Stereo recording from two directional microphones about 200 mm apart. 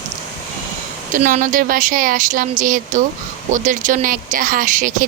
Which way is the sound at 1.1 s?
40° right (ahead or behind).